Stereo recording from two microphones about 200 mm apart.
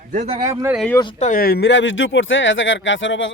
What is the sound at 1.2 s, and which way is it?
Speech, 45° left (ahead or behind).